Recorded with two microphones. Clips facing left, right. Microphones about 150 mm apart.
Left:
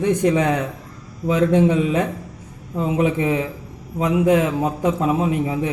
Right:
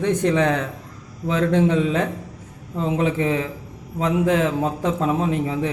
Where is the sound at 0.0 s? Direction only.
10° left (ahead or behind).